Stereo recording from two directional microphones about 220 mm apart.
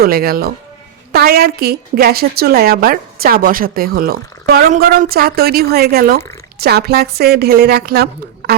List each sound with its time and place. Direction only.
0.0 s a woman's voice: 45° right (ahead or behind)